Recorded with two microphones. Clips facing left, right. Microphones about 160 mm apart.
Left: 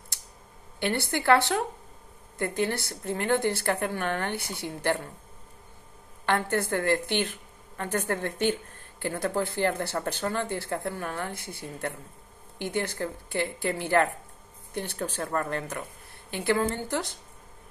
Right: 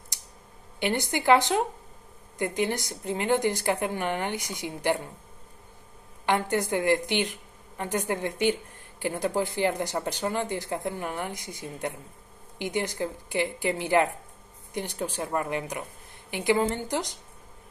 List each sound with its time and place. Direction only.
0.7 s speech: 15° right (ahead or behind)
6.2 s speech: 15° right (ahead or behind)